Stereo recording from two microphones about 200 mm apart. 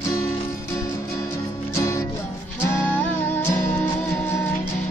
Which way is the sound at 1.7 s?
15° left (ahead or behind).